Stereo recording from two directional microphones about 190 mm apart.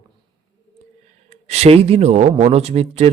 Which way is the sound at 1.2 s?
35° right (ahead or behind).